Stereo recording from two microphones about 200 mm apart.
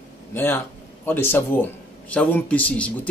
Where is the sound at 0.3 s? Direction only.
10° left (ahead or behind).